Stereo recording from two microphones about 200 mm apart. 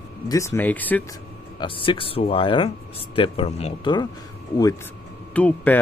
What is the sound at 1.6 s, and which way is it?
Speech, 25° left (ahead or behind).